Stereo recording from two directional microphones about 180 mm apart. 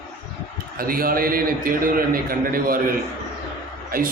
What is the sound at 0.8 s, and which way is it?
A man's voice, 55° right (ahead or behind).